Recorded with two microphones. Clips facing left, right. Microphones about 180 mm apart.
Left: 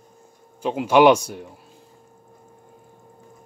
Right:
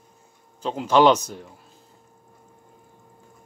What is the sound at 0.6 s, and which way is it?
Speech, 10° left (ahead or behind).